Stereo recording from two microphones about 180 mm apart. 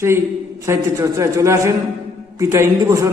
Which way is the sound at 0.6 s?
15° right (ahead or behind).